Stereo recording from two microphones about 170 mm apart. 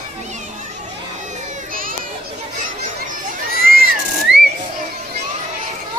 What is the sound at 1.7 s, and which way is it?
Children playing, 55° right (ahead or behind).